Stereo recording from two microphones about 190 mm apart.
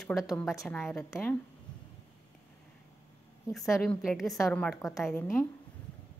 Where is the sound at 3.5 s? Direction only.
Centre (ahead or behind).